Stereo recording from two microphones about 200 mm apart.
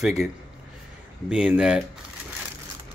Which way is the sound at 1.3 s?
5° right (ahead or behind).